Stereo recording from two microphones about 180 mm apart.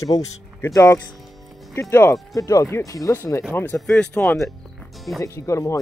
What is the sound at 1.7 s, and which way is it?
Speech, 15° left (ahead or behind).